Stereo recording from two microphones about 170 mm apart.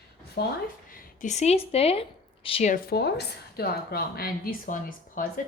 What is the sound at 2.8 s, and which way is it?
Speech, 70° left (ahead or behind).